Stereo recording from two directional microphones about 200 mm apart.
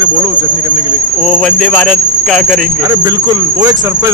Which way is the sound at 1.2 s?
Centre (ahead or behind).